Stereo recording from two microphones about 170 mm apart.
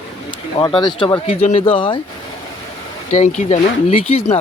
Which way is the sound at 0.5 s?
30° left (ahead or behind).